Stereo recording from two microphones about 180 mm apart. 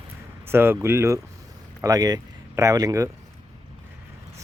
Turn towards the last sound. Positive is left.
turn(degrees=-20)  # may be behind; listen again after turning